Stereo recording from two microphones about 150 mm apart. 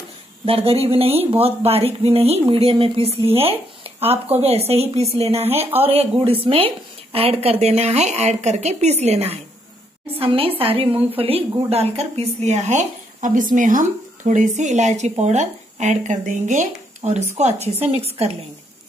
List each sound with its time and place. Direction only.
0.5 s a woman's voice: 40° right (ahead or behind)